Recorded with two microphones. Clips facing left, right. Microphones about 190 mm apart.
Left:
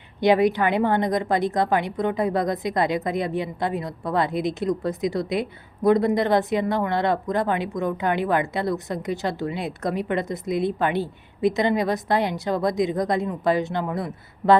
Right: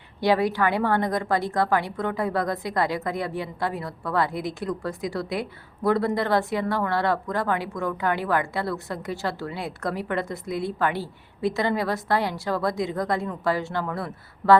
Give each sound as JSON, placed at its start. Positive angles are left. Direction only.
{"t": 0.2, "sound": "a woman's voice", "side_deg": 20}